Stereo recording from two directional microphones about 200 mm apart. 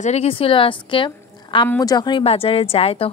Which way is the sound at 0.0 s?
30° left (ahead or behind).